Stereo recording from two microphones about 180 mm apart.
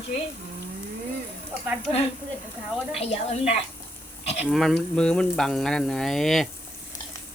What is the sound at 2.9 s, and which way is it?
Speech, 35° left (ahead or behind).